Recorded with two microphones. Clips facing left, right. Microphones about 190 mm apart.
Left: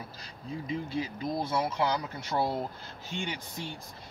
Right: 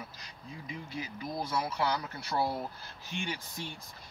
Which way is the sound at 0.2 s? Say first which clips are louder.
Left 8 dB; 30° left (ahead or behind).